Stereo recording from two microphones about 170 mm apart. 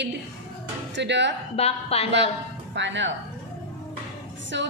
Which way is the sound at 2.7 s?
90° right.